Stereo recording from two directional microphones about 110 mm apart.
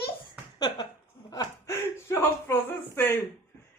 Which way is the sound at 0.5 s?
40° left (ahead or behind).